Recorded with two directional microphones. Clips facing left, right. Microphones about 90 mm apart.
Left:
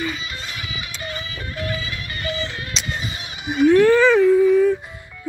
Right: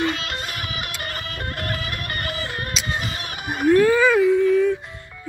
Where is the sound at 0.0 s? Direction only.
75° right (ahead or behind).